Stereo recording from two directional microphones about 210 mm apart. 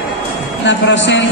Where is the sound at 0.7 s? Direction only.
60° left (ahead or behind).